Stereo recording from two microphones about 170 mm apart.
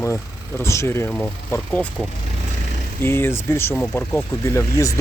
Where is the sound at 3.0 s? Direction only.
15° left (ahead or behind).